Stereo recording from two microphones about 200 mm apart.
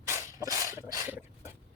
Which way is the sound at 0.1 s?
15° right (ahead or behind).